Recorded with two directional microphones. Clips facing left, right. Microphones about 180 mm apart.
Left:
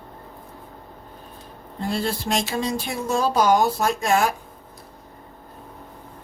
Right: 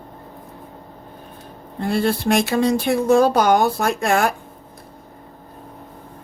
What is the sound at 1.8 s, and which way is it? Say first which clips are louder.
Speech: right 6 dB; 60° right (ahead or behind).